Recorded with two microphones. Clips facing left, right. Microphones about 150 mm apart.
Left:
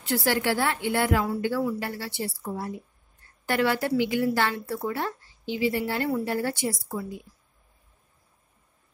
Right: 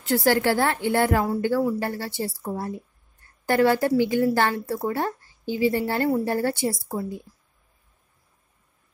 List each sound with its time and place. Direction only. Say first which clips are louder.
0.0 s a woman's voice: right 5 dB; 40° right (ahead or behind)
4.8 s a sound: right 4 dB; 40° right (ahead or behind)
5.9 s a woman's voice: right 4 dB; 40° right (ahead or behind)